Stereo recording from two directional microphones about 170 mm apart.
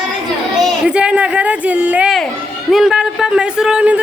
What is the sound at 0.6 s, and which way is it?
Speech, 5° right (ahead or behind).